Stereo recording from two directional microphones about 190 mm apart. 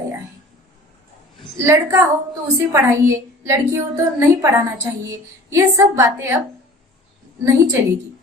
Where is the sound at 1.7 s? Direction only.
15° right (ahead or behind).